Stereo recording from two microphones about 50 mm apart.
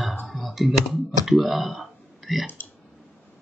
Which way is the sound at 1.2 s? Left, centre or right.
Centre.